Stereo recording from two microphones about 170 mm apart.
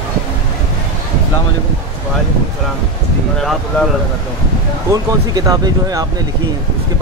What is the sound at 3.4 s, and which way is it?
Speech, centre (ahead or behind).